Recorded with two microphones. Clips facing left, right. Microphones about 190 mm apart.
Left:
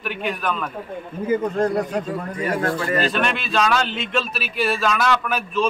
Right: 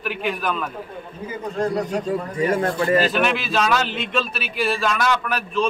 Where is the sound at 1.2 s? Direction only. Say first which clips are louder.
Left 5 dB; 50° left (ahead or behind).